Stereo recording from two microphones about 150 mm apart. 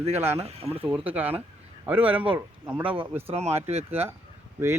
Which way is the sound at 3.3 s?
45° right (ahead or behind).